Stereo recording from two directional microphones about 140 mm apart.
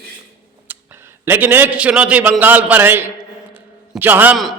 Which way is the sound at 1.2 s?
15° right (ahead or behind).